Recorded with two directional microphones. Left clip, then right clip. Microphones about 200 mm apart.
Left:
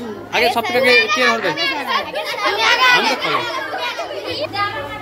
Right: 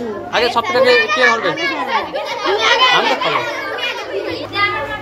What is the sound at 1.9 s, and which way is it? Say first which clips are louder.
Chatter: right 1 dB; 55° left (ahead or behind).